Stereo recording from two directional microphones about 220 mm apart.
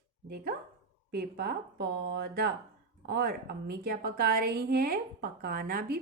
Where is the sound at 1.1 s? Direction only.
45° right (ahead or behind).